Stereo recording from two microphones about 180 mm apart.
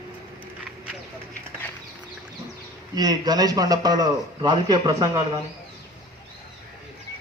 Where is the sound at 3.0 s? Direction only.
20° right (ahead or behind).